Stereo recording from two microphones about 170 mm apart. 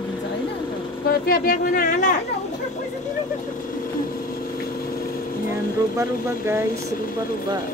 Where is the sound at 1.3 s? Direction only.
55° left (ahead or behind).